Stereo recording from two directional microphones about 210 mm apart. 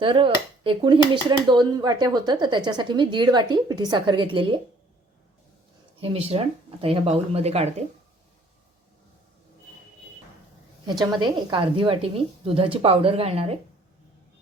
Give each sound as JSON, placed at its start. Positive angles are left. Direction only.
{"t": 0.0, "sound": "speech", "side_deg": -25}
{"t": 6.0, "sound": "speech", "side_deg": -25}
{"t": 11.0, "sound": "speech", "side_deg": -20}